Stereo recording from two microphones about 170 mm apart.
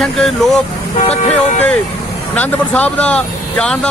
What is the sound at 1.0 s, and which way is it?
Speech, 40° left (ahead or behind).